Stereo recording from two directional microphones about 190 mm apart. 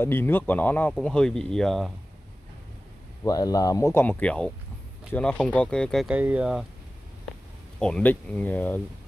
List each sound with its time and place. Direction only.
0.0 s speech: 10° left (ahead or behind)
3.3 s speech: 20° left (ahead or behind); by 6.6 s 5° right (ahead or behind)
7.8 s speech: 5° left (ahead or behind)